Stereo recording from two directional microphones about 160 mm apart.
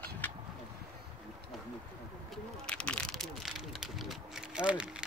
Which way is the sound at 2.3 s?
5° left (ahead or behind).